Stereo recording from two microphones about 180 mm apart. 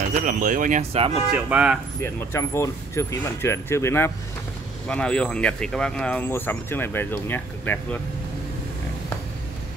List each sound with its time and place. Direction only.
0.2 s speech: 45° right (ahead or behind)
1.3 s speech: 5° right (ahead or behind)
2.0 s speech: 15° left (ahead or behind)